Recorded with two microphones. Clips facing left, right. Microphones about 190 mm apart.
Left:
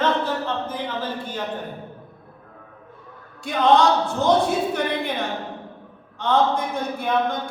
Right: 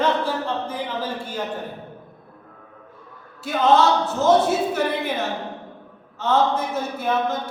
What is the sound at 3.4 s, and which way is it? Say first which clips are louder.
Speech: even; 5° right (ahead or behind).